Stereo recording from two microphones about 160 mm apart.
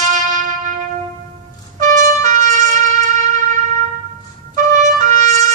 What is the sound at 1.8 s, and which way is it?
Trumpet, 50° right (ahead or behind).